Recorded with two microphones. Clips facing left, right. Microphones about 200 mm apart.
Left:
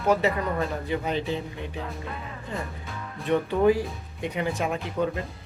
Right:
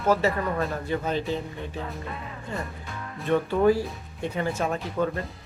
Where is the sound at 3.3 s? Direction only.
15° left (ahead or behind).